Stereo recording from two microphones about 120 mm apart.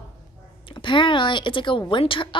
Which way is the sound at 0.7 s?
45° left (ahead or behind).